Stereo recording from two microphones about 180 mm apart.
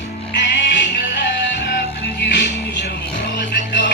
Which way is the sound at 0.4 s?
80° left.